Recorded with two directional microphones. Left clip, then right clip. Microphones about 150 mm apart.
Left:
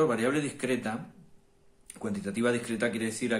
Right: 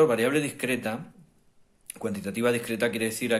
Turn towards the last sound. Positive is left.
turn(degrees=-30)  # may be behind; listen again after turning